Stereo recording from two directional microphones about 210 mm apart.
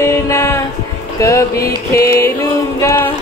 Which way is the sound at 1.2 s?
15° left (ahead or behind).